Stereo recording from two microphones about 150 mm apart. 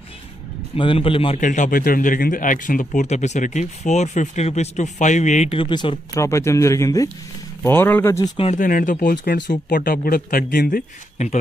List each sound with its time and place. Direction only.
0.7 s speech: 35° left (ahead or behind)
1.4 s speech: 60° left (ahead or behind)
5.5 s speech: 30° left (ahead or behind)
6.2 s speech: 20° left (ahead or behind)
8.5 s a man's voice: 60° left (ahead or behind)
11.2 s speech: 45° left (ahead or behind)